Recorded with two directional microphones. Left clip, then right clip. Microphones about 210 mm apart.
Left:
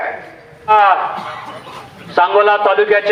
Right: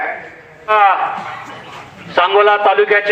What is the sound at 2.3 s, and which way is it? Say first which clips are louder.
Speech: right 2 dB; 15° left (ahead or behind).